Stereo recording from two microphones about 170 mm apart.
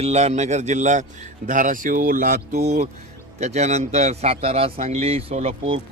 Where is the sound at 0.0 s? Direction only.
40° right (ahead or behind).